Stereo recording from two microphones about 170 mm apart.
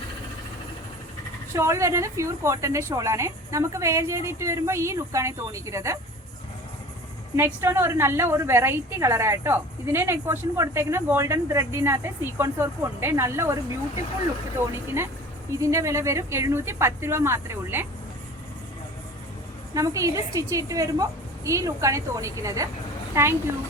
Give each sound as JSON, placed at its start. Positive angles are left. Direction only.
{"t": 1.5, "sound": "a woman's voice", "side_deg": -15}
{"t": 7.3, "sound": "a woman's voice", "side_deg": -15}
{"t": 14.7, "sound": "a woman's voice", "side_deg": -15}
{"t": 19.7, "sound": "a woman's voice", "side_deg": -20}